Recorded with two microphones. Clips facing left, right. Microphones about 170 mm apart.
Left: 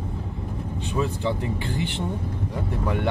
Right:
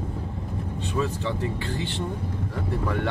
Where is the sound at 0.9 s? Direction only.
15° left (ahead or behind).